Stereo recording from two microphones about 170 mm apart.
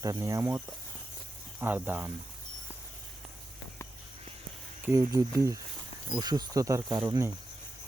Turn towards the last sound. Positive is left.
turn(degrees=-15)  # may be behind; listen again after turning